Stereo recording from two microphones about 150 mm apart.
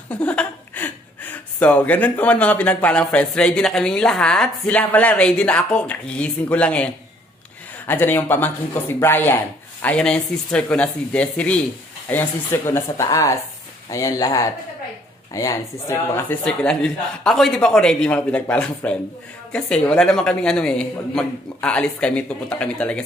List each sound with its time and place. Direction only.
0.1 s a man's voice: 10° left (ahead or behind)